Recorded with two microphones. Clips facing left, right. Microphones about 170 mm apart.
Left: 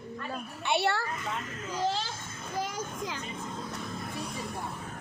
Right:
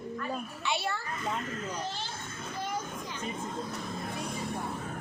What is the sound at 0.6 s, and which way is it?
A woman's voice, 70° left (ahead or behind).